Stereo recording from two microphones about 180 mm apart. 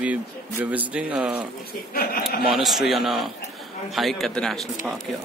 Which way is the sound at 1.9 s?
55° left (ahead or behind).